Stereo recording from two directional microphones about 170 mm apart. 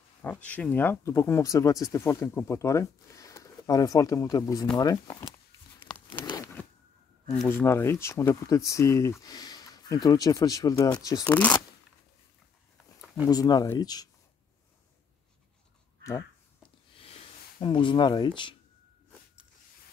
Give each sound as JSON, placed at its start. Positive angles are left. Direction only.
{"t": 0.2, "sound": "speech", "side_deg": 10}
{"t": 6.2, "sound": "zipper", "side_deg": 20}
{"t": 7.4, "sound": "speech", "side_deg": 15}
{"t": 11.2, "sound": "speech", "side_deg": 10}
{"t": 13.3, "sound": "speech", "side_deg": 20}
{"t": 17.6, "sound": "speech", "side_deg": 30}